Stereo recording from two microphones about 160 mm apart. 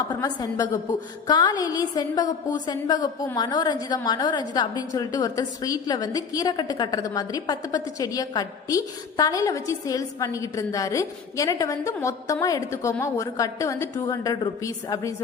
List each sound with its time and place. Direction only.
0.1 s a woman's voice: 25° left (ahead or behind)